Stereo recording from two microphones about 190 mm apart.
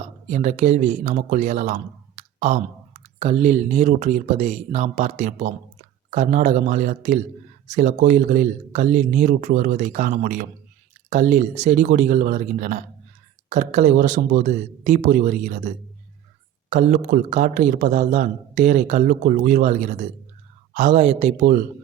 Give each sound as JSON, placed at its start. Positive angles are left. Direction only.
{"t": 0.3, "sound": "a man's voice", "side_deg": -35}